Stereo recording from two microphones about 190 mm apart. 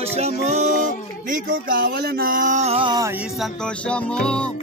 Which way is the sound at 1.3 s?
50° right (ahead or behind).